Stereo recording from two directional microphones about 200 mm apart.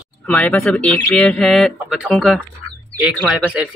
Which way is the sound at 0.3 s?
5° left (ahead or behind).